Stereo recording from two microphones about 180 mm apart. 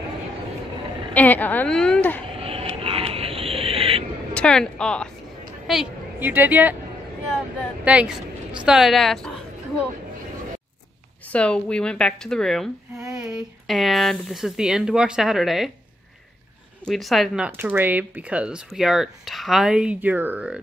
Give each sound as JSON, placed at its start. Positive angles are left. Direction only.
{"t": 1.1, "sound": "a woman's voice", "side_deg": 10}
{"t": 2.4, "sound": "owl", "side_deg": -30}
{"t": 4.3, "sound": "speech", "side_deg": 5}
{"t": 5.7, "sound": "a woman's voice", "side_deg": -5}
{"t": 7.8, "sound": "a woman's voice", "side_deg": -5}
{"t": 11.3, "sound": "a woman's voice", "side_deg": 5}
{"t": 16.8, "sound": "a woman's voice", "side_deg": 0}
{"t": 17.5, "sound": "a woman's voice", "side_deg": -10}